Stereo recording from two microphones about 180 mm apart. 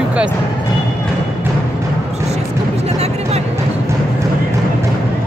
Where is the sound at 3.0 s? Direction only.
35° right (ahead or behind).